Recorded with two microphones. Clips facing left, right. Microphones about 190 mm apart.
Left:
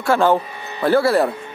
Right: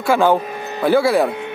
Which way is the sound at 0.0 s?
Centre (ahead or behind).